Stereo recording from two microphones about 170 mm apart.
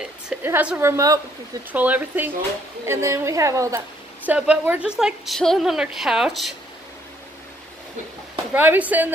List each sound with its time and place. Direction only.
0.0 s a woman's voice: 10° right (ahead or behind)
8.5 s a woman's voice: 10° right (ahead or behind)